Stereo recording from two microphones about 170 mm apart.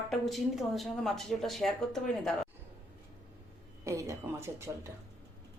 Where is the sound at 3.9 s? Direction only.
20° right (ahead or behind).